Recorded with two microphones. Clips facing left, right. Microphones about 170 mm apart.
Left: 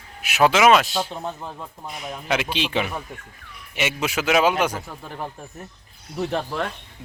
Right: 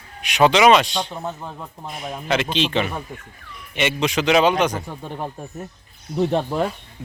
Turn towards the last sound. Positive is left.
turn(degrees=0)  # may be behind; listen again after turning